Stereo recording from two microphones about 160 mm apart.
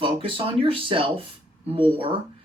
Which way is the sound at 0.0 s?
35° right (ahead or behind).